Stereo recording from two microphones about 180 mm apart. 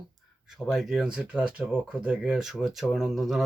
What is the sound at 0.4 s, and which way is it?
Speech, 5° right (ahead or behind).